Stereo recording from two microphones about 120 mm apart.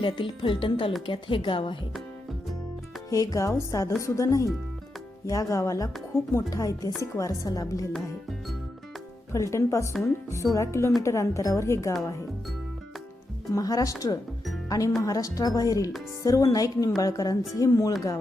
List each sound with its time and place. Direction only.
0.0 s speech: 45° left (ahead or behind)
3.1 s a woman's voice: 30° left (ahead or behind)
9.3 s a woman's voice: 25° left (ahead or behind)
13.5 s a woman's voice: 30° left (ahead or behind)